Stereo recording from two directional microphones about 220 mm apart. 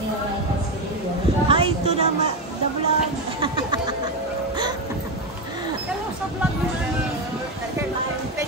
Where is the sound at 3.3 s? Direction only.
20° right (ahead or behind).